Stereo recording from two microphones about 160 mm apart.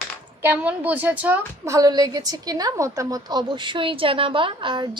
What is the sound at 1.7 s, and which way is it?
A woman's voice, 20° right (ahead or behind).